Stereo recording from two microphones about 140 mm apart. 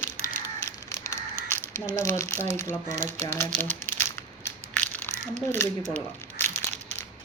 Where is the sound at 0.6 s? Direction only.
20° left (ahead or behind).